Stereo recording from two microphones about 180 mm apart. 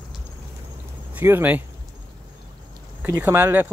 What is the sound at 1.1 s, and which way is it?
Speech, 10° right (ahead or behind).